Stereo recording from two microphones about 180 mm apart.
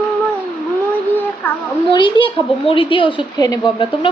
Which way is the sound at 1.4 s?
10° left (ahead or behind).